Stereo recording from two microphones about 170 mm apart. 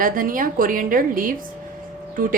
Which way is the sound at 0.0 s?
55° right (ahead or behind).